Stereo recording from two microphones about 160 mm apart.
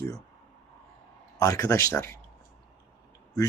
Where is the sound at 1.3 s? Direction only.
20° left (ahead or behind).